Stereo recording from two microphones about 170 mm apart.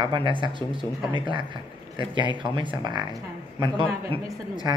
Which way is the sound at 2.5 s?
25° right (ahead or behind).